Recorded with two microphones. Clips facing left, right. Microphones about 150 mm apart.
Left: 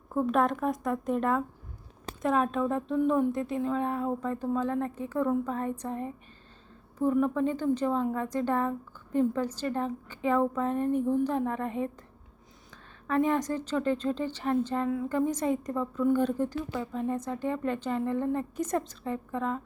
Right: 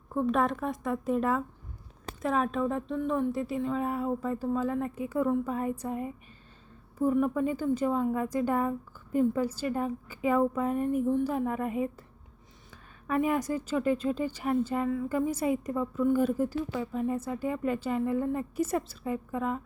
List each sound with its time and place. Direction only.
0.1 s a woman's voice: centre (ahead or behind)
13.1 s a woman's voice: 10° right (ahead or behind)